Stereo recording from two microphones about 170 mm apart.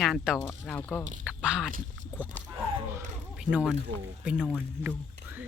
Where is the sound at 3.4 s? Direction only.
5° right (ahead or behind).